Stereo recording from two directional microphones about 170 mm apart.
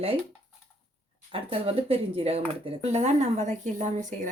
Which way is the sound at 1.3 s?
35° right (ahead or behind).